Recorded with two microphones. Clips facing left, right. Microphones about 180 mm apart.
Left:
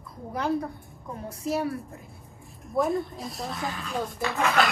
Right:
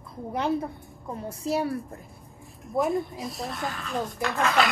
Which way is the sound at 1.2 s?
30° right (ahead or behind).